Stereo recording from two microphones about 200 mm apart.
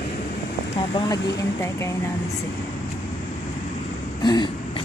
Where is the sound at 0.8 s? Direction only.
25° left (ahead or behind).